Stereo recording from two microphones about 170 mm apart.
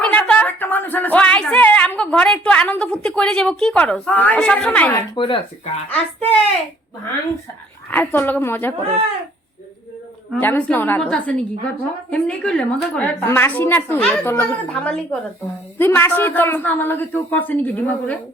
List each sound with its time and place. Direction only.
0.0 s speech: 10° left (ahead or behind)
5.1 s speech: 30° left (ahead or behind)
5.9 s a woman's voice: 10° left (ahead or behind)
7.9 s a woman's voice: 10° left (ahead or behind)
10.3 s a woman's voice: 10° left (ahead or behind)